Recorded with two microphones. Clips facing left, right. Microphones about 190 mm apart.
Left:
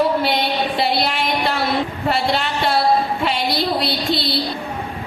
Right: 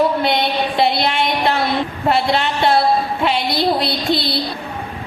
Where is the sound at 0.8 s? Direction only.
Centre (ahead or behind).